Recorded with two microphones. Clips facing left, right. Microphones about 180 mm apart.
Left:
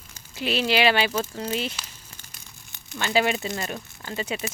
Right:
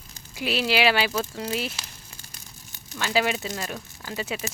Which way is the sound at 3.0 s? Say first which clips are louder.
Left 1 dB; centre (ahead or behind).